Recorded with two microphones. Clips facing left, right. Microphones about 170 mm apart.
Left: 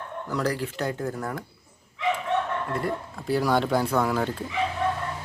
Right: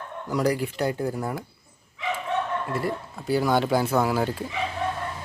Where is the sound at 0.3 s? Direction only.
15° right (ahead or behind).